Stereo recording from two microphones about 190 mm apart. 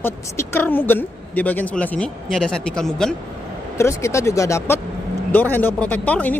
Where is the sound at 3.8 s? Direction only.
15° left (ahead or behind).